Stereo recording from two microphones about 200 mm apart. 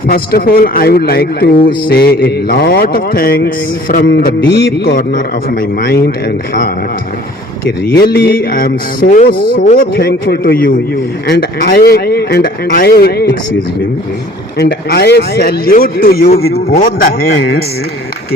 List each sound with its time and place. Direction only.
0.1 s a man's voice: 50° left (ahead or behind)
7.9 s a man's voice: 50° left (ahead or behind)
14.6 s a man's voice: 55° left (ahead or behind)